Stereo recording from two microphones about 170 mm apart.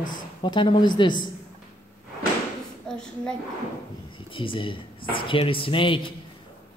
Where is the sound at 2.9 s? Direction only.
5° left (ahead or behind).